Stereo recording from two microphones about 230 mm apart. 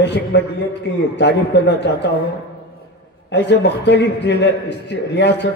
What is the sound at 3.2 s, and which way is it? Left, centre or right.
A man's voice, left.